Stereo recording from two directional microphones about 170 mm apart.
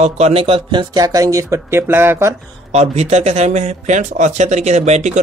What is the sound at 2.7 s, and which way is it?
Speech, 40° right (ahead or behind).